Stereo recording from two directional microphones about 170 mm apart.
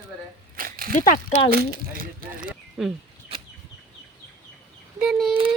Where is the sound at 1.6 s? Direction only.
55° right (ahead or behind).